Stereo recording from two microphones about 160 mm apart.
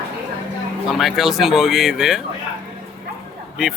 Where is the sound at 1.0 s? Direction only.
Centre (ahead or behind).